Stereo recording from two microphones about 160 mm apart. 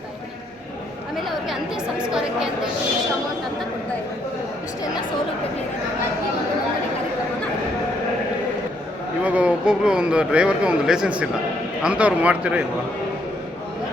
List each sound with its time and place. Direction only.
1.5 s speech: 5° right (ahead or behind)
9.2 s speech: 10° right (ahead or behind)